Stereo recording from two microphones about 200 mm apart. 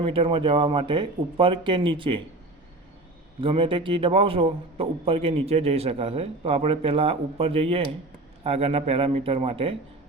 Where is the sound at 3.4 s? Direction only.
25° right (ahead or behind).